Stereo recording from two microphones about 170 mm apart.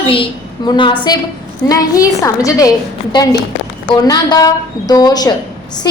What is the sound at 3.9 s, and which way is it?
A woman's voice, 25° left (ahead or behind).